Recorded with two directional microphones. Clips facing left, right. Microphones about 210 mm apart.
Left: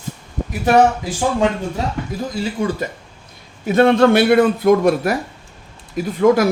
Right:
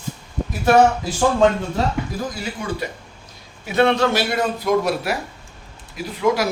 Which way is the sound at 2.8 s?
50° left (ahead or behind).